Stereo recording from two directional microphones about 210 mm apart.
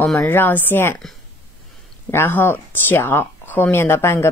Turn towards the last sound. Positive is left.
turn(degrees=10)  # may be behind; listen again after turning